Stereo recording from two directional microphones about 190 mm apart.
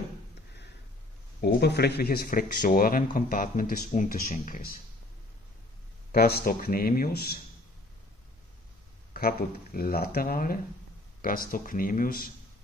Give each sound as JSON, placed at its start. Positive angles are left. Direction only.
{"t": 1.4, "sound": "speech", "side_deg": 60}
{"t": 6.1, "sound": "speech", "side_deg": 55}
{"t": 9.1, "sound": "speech", "side_deg": 50}